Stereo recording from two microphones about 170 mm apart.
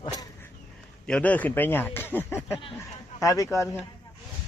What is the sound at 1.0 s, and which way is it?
Speech, 5° left (ahead or behind).